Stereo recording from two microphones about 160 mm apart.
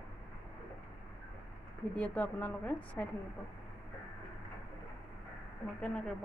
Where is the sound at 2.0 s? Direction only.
10° left (ahead or behind).